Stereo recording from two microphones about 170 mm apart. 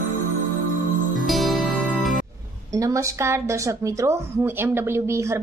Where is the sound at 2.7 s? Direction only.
20° right (ahead or behind).